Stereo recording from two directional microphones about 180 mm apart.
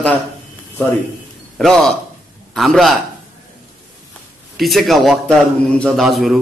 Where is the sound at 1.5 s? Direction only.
5° left (ahead or behind).